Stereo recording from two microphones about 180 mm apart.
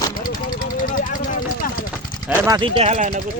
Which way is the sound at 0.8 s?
50° left (ahead or behind).